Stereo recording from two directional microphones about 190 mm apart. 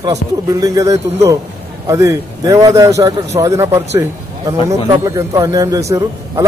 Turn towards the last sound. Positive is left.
turn(degrees=-15)  # may be behind; listen again after turning